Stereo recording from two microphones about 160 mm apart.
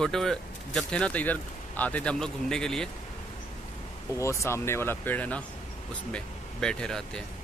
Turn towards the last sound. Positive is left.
turn(degrees=5)  # may be behind; listen again after turning